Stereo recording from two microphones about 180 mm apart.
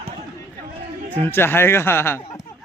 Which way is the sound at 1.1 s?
10° left (ahead or behind).